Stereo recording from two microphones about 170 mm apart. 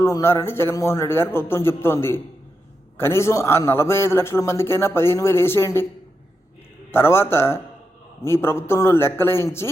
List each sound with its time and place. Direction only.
0.0 s a man's voice: 20° left (ahead or behind)
6.9 s a man's voice: 15° left (ahead or behind)